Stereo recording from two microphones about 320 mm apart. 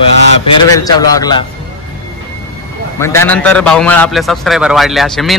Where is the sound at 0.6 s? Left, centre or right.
Centre.